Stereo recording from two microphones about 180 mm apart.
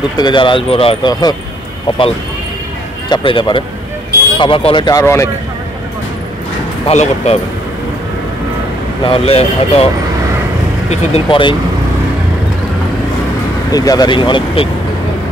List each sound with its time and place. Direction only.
0.2 s speech: 25° left (ahead or behind)
3.1 s speech: 25° left (ahead or behind)
6.9 s speech: 35° left (ahead or behind)
9.0 s speech: 30° left (ahead or behind)
10.9 s speech: 30° left (ahead or behind)
13.7 s speech: 20° left (ahead or behind)